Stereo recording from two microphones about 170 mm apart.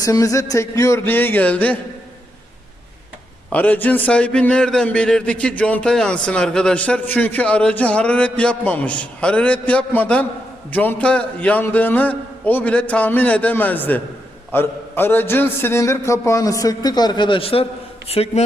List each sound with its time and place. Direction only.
0.0 s a man's voice: 20° left (ahead or behind)
3.5 s a man's voice: 10° left (ahead or behind); by 18.4 s 35° left (ahead or behind)